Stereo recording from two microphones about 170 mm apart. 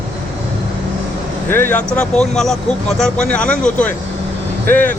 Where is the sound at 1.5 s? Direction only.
15° left (ahead or behind).